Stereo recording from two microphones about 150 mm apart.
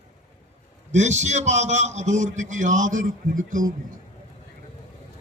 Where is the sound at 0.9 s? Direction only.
50° right (ahead or behind).